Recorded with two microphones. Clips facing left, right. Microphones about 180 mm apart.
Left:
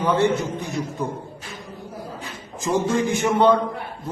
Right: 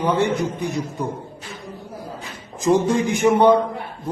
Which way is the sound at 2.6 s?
15° right (ahead or behind).